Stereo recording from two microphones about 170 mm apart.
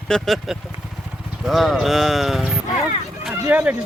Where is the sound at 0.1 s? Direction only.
Centre (ahead or behind).